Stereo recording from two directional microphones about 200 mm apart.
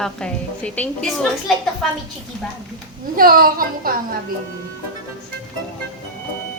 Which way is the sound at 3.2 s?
45° right (ahead or behind).